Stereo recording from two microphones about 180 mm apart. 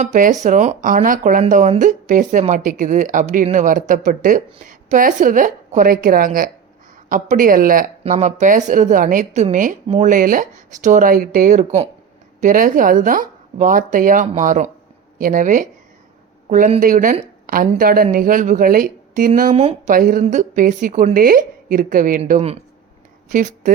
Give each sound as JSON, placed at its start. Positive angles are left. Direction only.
{"t": 0.0, "sound": "speech", "side_deg": -45}
{"t": 23.3, "sound": "speech", "side_deg": -45}